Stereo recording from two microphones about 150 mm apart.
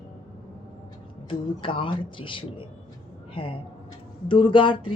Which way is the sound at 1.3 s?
35° left (ahead or behind).